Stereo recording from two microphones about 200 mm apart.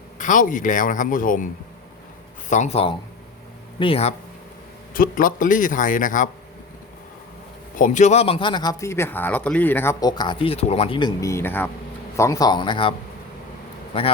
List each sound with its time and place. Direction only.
0.2 s speech: 40° left (ahead or behind)
2.5 s a man's voice: 35° left (ahead or behind)
4.9 s a man's voice: 45° left (ahead or behind)
7.8 s a man's voice: 35° left (ahead or behind)